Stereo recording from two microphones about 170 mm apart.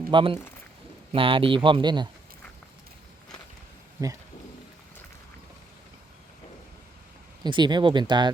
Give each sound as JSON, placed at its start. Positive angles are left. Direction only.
{"t": 0.1, "sound": "speech", "side_deg": -30}
{"t": 7.4, "sound": "speech", "side_deg": -25}